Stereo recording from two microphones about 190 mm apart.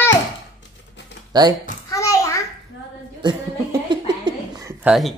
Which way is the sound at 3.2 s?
20° right (ahead or behind).